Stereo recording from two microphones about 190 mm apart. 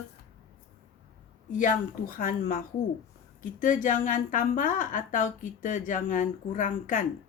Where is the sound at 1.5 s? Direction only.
45° left (ahead or behind).